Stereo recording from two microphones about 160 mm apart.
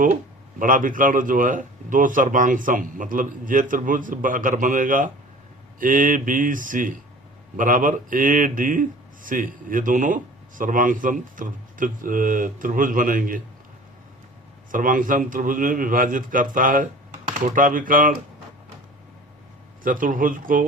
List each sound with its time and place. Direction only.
0.6 s speech: 55° right (ahead or behind)
14.7 s speech: 60° right (ahead or behind)
19.8 s speech: 60° right (ahead or behind)